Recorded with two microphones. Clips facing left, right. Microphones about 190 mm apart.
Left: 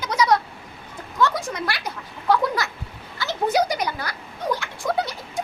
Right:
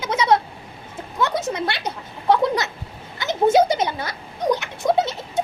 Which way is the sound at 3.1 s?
20° right (ahead or behind).